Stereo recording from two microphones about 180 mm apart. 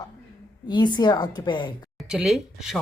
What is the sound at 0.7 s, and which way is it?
A woman's voice, 25° left (ahead or behind).